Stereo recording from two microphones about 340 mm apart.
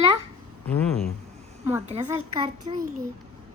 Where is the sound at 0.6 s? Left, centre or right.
Centre.